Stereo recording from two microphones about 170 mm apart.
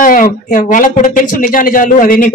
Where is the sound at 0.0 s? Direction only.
55° left (ahead or behind).